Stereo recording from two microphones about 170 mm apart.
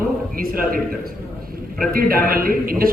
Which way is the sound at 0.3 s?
60° right (ahead or behind).